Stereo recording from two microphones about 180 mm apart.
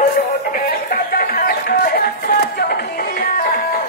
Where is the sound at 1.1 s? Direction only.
55° left (ahead or behind).